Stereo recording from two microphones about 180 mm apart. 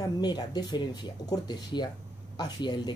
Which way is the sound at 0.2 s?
25° left (ahead or behind).